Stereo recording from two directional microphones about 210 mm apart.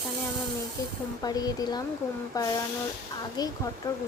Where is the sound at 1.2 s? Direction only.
20° left (ahead or behind).